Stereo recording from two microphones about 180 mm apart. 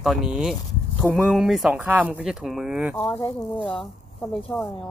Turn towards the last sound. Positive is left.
turn(degrees=10)  # may be behind; listen again after turning